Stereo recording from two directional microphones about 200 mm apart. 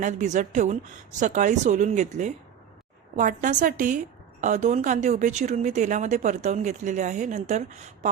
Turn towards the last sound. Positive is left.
turn(degrees=-35)  # may be behind; listen again after turning